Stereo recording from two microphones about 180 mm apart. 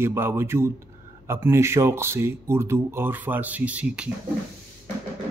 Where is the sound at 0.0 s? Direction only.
15° right (ahead or behind).